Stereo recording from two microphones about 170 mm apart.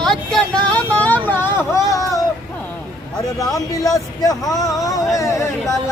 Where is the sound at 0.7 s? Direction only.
10° left (ahead or behind).